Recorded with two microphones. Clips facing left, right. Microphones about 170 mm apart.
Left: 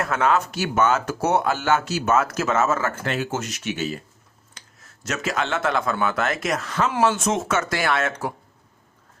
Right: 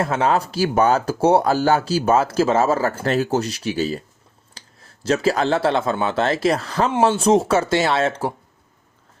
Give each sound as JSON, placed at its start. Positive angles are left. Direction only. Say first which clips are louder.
{"t": 0.0, "sound": "speech", "louder": "right 2 dB", "side_deg": -30}